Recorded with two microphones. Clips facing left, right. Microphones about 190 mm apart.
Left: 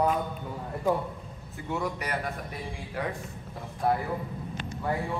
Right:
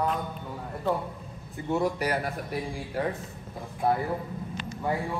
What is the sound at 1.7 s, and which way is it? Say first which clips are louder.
Speech: right 5 dB; 30° right (ahead or behind).